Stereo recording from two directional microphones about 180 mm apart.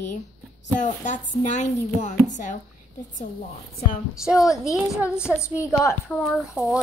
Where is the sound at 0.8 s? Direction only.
45° left (ahead or behind).